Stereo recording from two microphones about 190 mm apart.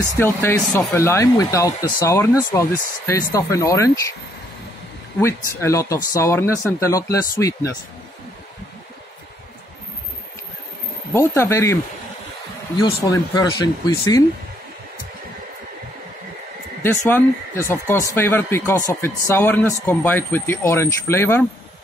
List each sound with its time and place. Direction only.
0.2 s speech: 10° left (ahead or behind)
5.2 s speech: 15° left (ahead or behind)
11.1 s speech: 15° left (ahead or behind)
16.8 s speech: 10° left (ahead or behind)